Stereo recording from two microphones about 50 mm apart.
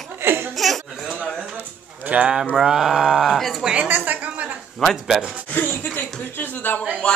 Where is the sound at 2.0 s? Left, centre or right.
Right.